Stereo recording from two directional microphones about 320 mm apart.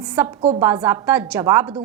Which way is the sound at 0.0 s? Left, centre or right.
Centre.